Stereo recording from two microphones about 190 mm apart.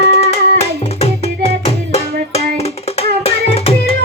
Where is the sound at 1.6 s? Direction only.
35° left (ahead or behind).